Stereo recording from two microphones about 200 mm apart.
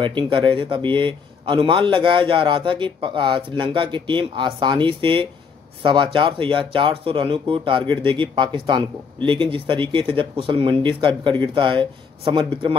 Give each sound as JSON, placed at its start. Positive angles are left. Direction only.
{"t": 0.0, "sound": "speech", "side_deg": -25}